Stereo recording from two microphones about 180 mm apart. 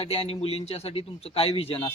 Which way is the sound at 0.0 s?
35° left (ahead or behind).